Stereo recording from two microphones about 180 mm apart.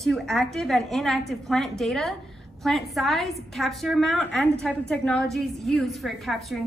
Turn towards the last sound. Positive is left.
turn(degrees=0)  # may be behind; listen again after turning